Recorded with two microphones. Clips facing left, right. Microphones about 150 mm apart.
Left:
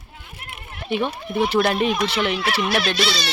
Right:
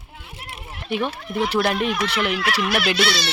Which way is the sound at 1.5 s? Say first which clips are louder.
Left 2 dB; centre (ahead or behind).